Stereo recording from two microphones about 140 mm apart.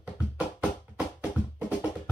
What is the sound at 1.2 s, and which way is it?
Music, 10° right (ahead or behind).